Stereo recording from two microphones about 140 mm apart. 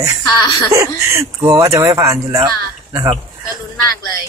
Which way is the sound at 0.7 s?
20° right (ahead or behind).